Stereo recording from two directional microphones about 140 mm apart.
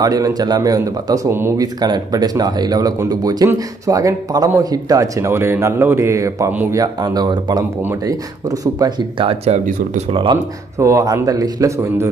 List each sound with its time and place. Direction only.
0.0 s a man's voice: 25° right (ahead or behind)
10.8 s a man's voice: 20° right (ahead or behind)